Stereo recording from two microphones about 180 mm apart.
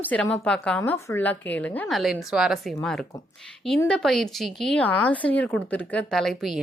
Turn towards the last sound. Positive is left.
turn(degrees=0)  # may be behind; listen again after turning